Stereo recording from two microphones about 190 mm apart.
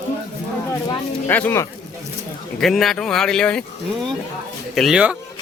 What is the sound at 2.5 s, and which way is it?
Speech, centre (ahead or behind).